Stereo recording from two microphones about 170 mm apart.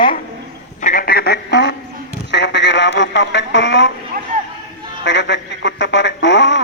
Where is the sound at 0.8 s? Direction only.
50° left (ahead or behind); by 3.9 s 90° left.